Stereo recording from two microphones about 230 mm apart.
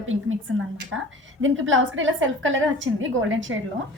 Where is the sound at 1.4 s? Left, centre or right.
Right.